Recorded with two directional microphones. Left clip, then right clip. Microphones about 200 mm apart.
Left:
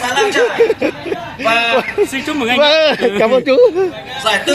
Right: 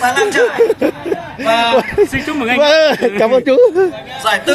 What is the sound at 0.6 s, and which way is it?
A man's voice, 30° right (ahead or behind).